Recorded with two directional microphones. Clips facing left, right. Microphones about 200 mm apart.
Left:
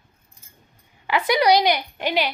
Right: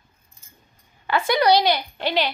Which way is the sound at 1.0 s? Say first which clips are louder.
Even; 15° left (ahead or behind).